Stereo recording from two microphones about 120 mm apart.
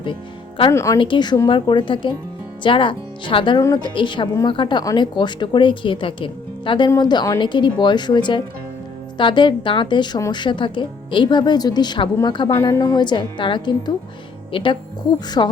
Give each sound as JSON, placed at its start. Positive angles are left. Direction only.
{"t": 0.7, "sound": "speech", "side_deg": 25}
{"t": 0.9, "sound": "a woman's voice", "side_deg": 40}